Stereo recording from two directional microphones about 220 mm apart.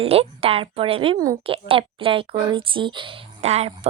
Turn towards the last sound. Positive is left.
turn(degrees=-30)  # may be behind; listen again after turning